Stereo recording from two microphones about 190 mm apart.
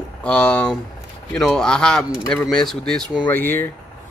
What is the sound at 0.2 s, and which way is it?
Speech, 5° left (ahead or behind).